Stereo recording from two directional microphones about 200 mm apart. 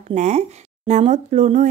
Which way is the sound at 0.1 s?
35° right (ahead or behind).